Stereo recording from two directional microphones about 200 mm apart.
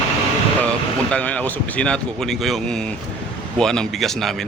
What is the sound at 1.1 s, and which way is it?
Speech, 5° left (ahead or behind).